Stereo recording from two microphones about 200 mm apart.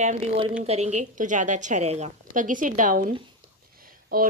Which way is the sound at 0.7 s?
35° right (ahead or behind).